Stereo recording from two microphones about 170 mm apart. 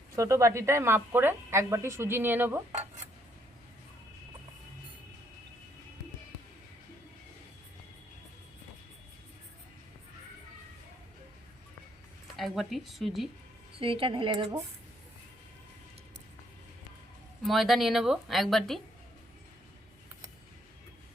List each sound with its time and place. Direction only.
0.2 s a woman's voice: 20° right (ahead or behind)
12.4 s a woman's voice: centre (ahead or behind)
13.7 s a woman's voice: 30° right (ahead or behind)
17.4 s a woman's voice: centre (ahead or behind)